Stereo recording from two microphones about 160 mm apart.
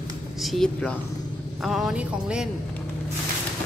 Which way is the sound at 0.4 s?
Centre (ahead or behind).